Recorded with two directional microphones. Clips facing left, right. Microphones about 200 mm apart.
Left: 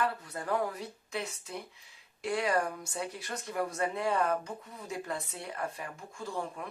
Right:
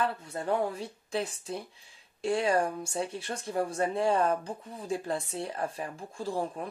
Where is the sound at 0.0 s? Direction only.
25° right (ahead or behind).